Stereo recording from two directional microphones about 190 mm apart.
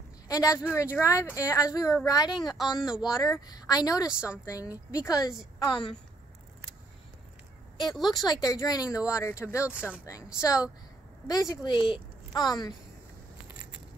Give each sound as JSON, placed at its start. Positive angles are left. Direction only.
{"t": 0.3, "sound": "a woman's voice", "side_deg": 20}
{"t": 2.5, "sound": "a woman's voice", "side_deg": 0}
{"t": 3.3, "sound": "a woman's voice", "side_deg": 20}
{"t": 4.0, "sound": "a woman's voice", "side_deg": -5}
{"t": 4.5, "sound": "a woman's voice", "side_deg": 20}
{"t": 7.9, "sound": "a woman's voice", "side_deg": 0}
{"t": 8.3, "sound": "a woman's voice", "side_deg": 20}
{"t": 8.8, "sound": "a woman's voice", "side_deg": -5}
{"t": 9.1, "sound": "speech", "side_deg": 15}
{"t": 9.7, "sound": "speech", "side_deg": -5}
{"t": 10.0, "sound": "a woman's voice", "side_deg": 15}